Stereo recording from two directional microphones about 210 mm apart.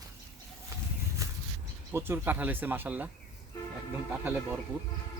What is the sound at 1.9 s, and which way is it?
Speech, 10° right (ahead or behind).